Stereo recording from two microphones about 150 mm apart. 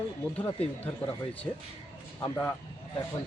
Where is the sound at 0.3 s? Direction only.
10° left (ahead or behind).